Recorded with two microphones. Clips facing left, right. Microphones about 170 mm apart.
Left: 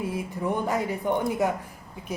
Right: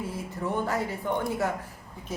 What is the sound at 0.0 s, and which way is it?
A woman's voice, 15° left (ahead or behind).